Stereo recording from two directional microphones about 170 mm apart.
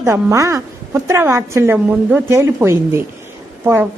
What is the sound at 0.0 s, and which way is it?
A woman's voice, 15° right (ahead or behind).